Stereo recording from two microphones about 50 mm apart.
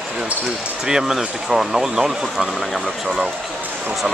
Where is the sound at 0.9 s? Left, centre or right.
Centre.